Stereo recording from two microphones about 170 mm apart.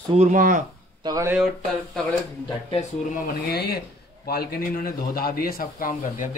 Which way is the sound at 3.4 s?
70° left (ahead or behind).